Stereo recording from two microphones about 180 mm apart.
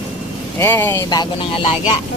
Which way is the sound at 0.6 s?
10° left (ahead or behind).